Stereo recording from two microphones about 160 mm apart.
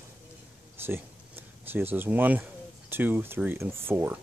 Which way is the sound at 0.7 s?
15° right (ahead or behind).